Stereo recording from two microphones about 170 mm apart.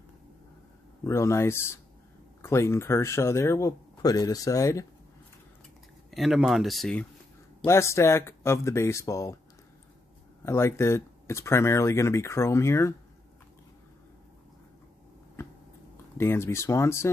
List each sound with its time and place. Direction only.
1.0 s speech: 15° left (ahead or behind)
6.0 s speech: centre (ahead or behind)
7.6 s speech: 15° left (ahead or behind)
10.4 s speech: 15° left (ahead or behind)
15.4 s a sound: 15° left (ahead or behind)
16.2 s speech: 15° left (ahead or behind)